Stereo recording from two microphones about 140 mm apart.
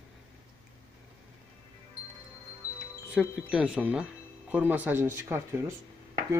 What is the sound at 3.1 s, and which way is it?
Speech, 5° right (ahead or behind).